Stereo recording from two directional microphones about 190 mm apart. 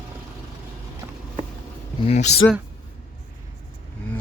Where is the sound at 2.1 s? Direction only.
35° left (ahead or behind).